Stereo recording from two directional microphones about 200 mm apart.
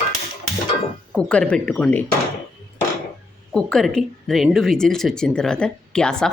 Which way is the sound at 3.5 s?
5° left (ahead or behind).